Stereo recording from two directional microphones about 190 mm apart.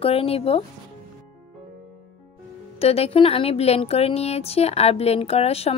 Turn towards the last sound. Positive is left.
turn(degrees=30)  # may be behind; listen again after turning